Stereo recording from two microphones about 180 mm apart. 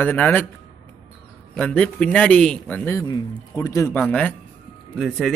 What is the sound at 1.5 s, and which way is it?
A man's voice, 5° left (ahead or behind).